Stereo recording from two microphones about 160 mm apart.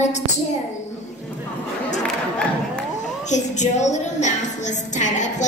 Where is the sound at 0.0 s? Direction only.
45° left (ahead or behind).